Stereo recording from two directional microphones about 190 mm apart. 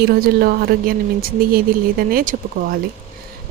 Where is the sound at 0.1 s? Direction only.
55° right (ahead or behind).